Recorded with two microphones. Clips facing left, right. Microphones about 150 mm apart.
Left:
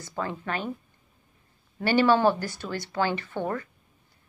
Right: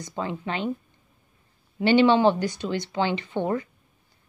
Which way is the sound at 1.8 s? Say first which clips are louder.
Right 3 dB; 20° right (ahead or behind).